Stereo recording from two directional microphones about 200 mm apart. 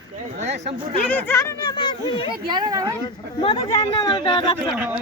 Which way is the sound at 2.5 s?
20° right (ahead or behind).